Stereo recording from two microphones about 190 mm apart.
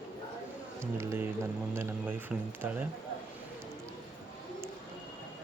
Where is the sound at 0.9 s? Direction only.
15° right (ahead or behind).